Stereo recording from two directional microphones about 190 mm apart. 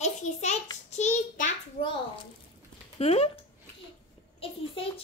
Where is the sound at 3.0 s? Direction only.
35° left (ahead or behind).